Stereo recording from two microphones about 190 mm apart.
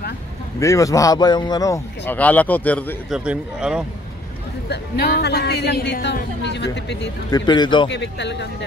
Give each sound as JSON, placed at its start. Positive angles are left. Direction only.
{"t": 0.6, "sound": "a man's voice", "side_deg": 15}
{"t": 3.1, "sound": "a man's voice", "side_deg": -5}
{"t": 4.6, "sound": "speech", "side_deg": 60}
{"t": 7.2, "sound": "a man's voice", "side_deg": 20}
{"t": 7.9, "sound": "speech", "side_deg": 65}